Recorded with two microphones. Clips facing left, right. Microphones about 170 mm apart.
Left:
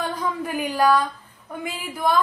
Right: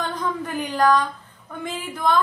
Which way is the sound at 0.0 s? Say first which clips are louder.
Even; 10° left (ahead or behind).